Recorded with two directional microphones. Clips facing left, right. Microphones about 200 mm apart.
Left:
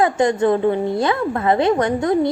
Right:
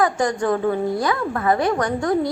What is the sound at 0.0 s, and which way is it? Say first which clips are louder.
A woman's voice: left 4 dB; 25° left (ahead or behind).